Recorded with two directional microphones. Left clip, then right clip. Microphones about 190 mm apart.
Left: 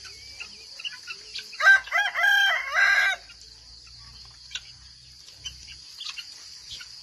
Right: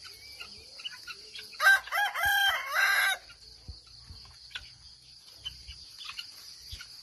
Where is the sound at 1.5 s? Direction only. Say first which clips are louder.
Left 5 dB; 70° right (ahead or behind).